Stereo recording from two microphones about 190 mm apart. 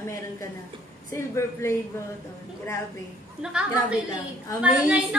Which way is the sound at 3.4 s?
5° right (ahead or behind).